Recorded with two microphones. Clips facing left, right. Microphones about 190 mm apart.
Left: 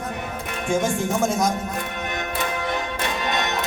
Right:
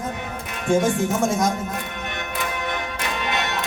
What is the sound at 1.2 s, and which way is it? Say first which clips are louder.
Speech: even; centre (ahead or behind).